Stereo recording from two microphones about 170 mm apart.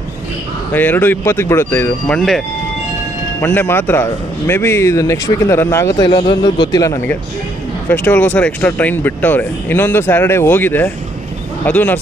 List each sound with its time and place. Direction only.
0.7 s speech: 10° left (ahead or behind)
6.0 s a man's voice: 25° left (ahead or behind); by 12.0 s 10° left (ahead or behind)